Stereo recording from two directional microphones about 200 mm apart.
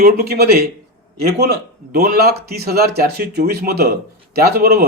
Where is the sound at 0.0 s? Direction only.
50° right (ahead or behind).